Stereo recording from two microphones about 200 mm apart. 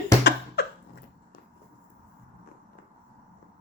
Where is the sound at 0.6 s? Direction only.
55° left (ahead or behind).